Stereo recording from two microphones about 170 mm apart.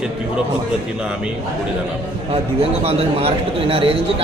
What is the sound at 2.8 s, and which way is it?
Speech, 35° right (ahead or behind).